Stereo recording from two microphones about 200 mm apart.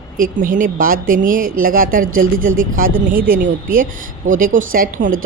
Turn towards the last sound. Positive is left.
turn(degrees=-40)  # may be behind; listen again after turning